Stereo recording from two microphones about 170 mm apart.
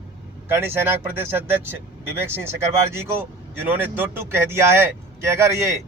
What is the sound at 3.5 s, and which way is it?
Speech, 10° right (ahead or behind).